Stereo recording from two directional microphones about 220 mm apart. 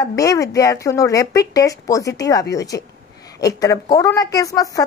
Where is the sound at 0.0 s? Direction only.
15° left (ahead or behind).